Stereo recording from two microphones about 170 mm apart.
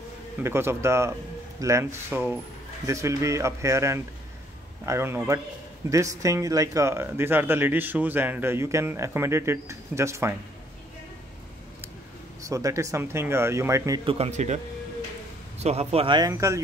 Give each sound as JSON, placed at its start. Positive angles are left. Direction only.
{"t": 0.4, "sound": "speech", "side_deg": -15}
{"t": 12.4, "sound": "speech", "side_deg": -20}
{"t": 14.0, "sound": "a man's voice", "side_deg": -35}
{"t": 15.6, "sound": "speech", "side_deg": -35}